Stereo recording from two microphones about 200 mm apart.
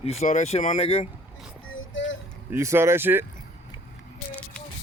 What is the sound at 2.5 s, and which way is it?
Speech, 15° right (ahead or behind).